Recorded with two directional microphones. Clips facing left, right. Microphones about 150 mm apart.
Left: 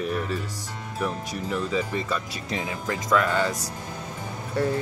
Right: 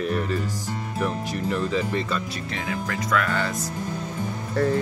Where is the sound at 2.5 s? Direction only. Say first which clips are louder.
Left 1 dB; 20° left (ahead or behind).